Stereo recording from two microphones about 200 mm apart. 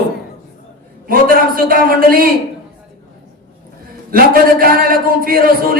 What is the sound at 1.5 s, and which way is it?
Speech, 45° right (ahead or behind).